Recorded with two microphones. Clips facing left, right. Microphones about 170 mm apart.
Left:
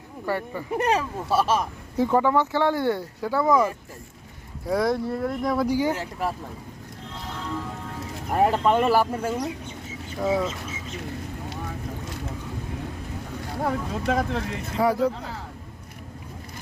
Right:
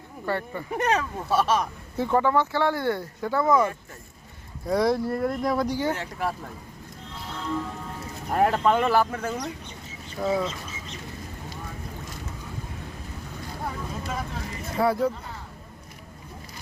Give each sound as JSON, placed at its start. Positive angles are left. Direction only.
{"t": 0.3, "sound": "speech", "side_deg": 10}
{"t": 4.7, "sound": "speech", "side_deg": 0}
{"t": 8.3, "sound": "speech", "side_deg": 5}
{"t": 13.7, "sound": "speech", "side_deg": 75}
{"t": 14.8, "sound": "speech", "side_deg": 15}
{"t": 15.1, "sound": "speech", "side_deg": 90}